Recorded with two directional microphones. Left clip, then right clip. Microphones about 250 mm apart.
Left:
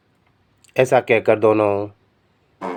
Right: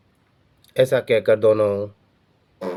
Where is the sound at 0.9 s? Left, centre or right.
Left.